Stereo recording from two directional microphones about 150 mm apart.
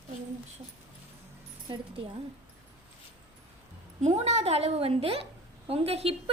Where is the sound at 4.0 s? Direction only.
50° right (ahead or behind).